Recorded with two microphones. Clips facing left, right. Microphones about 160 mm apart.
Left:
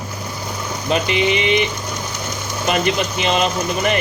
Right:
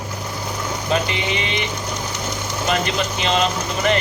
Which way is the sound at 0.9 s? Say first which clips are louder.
Left 5 dB; 20° left (ahead or behind).